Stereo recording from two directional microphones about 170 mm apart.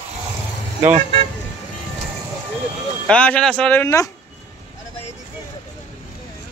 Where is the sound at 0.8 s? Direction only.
40° right (ahead or behind).